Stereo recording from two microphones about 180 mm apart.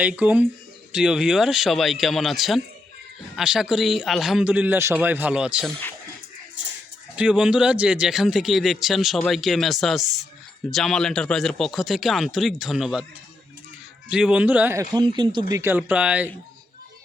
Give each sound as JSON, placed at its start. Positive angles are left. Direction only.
{"t": 0.0, "sound": "speech", "side_deg": -10}
{"t": 7.2, "sound": "speech", "side_deg": -5}
{"t": 14.1, "sound": "speech", "side_deg": -5}
{"t": 14.9, "sound": "speech", "side_deg": -25}